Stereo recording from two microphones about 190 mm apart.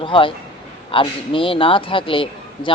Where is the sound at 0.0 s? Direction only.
25° left (ahead or behind).